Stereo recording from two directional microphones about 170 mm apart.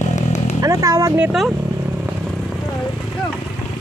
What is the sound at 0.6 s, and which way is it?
Vehicle, 20° right (ahead or behind).